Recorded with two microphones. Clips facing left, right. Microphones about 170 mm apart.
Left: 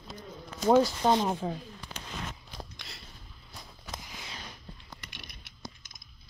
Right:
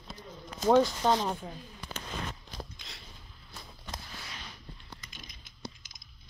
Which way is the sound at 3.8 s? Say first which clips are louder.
Left 1 dB; 10° left (ahead or behind).